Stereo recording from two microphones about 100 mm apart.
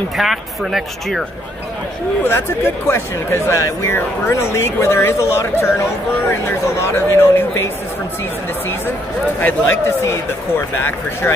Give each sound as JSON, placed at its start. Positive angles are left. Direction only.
{"t": 0.2, "sound": "speech", "side_deg": 0}
{"t": 2.2, "sound": "speech", "side_deg": 25}
{"t": 9.4, "sound": "speech", "side_deg": 20}